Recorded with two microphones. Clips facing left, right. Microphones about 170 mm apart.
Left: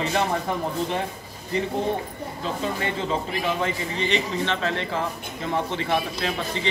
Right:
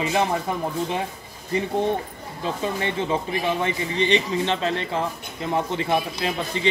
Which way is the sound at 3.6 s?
20° right (ahead or behind).